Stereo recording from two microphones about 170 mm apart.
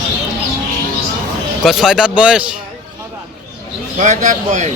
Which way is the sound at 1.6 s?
Centre (ahead or behind).